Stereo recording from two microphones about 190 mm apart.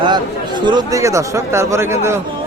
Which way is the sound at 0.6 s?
25° right (ahead or behind).